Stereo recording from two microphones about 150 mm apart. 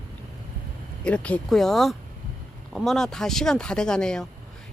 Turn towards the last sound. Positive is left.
turn(degrees=5)  # may be behind; listen again after turning